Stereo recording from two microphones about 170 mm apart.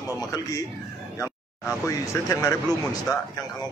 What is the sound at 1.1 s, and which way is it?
Speech, 15° left (ahead or behind).